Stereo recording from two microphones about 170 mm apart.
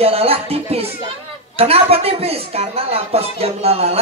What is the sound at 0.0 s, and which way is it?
Music, 35° right (ahead or behind).